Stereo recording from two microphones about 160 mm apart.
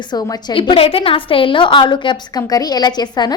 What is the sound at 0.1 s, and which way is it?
A woman's voice, 25° left (ahead or behind).